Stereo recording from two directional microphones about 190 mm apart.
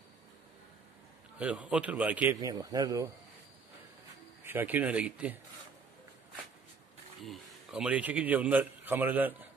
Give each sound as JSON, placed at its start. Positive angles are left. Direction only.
{"t": 1.4, "sound": "speech", "side_deg": -5}
{"t": 2.4, "sound": "speech", "side_deg": -20}
{"t": 4.5, "sound": "speech", "side_deg": -10}
{"t": 7.2, "sound": "a man's voice", "side_deg": -5}